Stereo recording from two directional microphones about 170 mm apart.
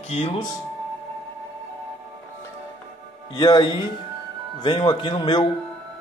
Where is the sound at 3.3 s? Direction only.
25° left (ahead or behind).